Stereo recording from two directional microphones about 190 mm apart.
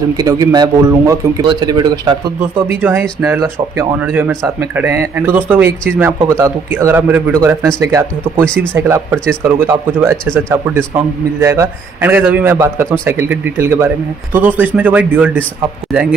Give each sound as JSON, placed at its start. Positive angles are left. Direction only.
{"t": 0.2, "sound": "speech", "side_deg": -20}